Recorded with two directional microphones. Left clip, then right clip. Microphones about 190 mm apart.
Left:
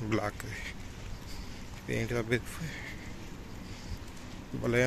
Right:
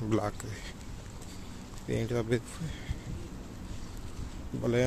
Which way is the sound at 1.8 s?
20° right (ahead or behind).